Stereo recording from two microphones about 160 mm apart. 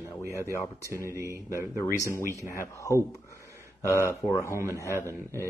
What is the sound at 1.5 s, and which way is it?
Speech, 15° left (ahead or behind).